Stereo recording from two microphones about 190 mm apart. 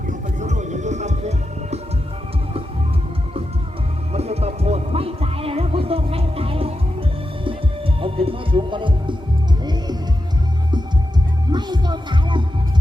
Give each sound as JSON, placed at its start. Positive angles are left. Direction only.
{"t": 0.1, "sound": "music", "side_deg": -40}
{"t": 4.1, "sound": "music", "side_deg": -35}
{"t": 8.0, "sound": "music", "side_deg": -30}
{"t": 11.5, "sound": "music", "side_deg": -25}